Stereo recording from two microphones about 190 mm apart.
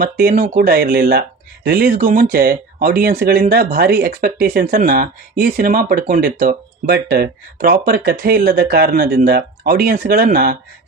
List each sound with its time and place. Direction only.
0.0 s speech: 50° right (ahead or behind)